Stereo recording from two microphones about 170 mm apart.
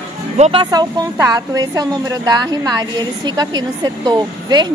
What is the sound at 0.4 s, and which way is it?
A woman's voice, 30° right (ahead or behind).